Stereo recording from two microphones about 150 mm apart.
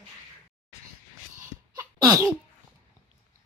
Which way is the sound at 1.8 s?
20° right (ahead or behind).